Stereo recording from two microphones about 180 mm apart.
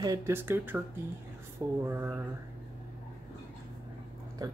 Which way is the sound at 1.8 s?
15° right (ahead or behind).